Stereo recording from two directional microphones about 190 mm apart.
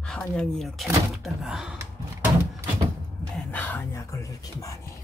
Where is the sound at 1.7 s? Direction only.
10° right (ahead or behind).